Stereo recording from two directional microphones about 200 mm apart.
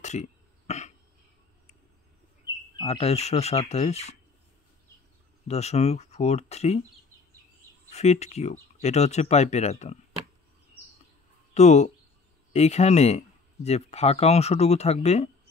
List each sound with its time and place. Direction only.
0.0 s cough: 35° left (ahead or behind)
2.8 s speech: 30° left (ahead or behind)
5.5 s speech: 35° left (ahead or behind)
7.9 s speech: 35° left (ahead or behind)
11.5 s speech: 35° left (ahead or behind)